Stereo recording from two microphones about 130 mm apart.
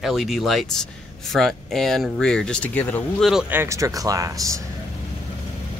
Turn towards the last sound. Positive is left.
turn(degrees=-25)  # may be behind; listen again after turning